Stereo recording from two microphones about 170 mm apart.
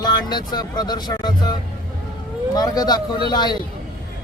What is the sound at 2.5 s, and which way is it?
Speech, 20° left (ahead or behind).